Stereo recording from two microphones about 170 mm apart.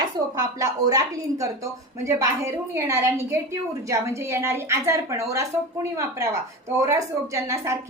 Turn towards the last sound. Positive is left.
turn(degrees=-15)  # may be behind; listen again after turning